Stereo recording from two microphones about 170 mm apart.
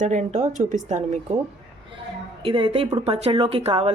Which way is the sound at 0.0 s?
45° right (ahead or behind).